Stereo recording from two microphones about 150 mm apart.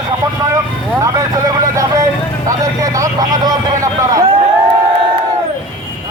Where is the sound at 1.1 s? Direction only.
20° right (ahead or behind).